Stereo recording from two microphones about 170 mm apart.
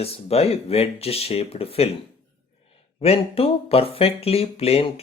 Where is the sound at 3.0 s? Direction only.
35° left (ahead or behind).